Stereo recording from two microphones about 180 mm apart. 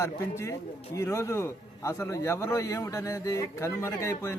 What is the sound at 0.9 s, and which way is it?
Speech, 15° left (ahead or behind).